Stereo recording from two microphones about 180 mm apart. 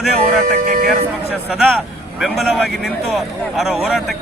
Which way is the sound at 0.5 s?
55° right (ahead or behind).